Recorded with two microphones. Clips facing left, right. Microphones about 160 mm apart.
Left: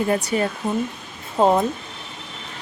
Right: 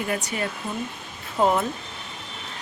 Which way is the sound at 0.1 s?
30° left (ahead or behind).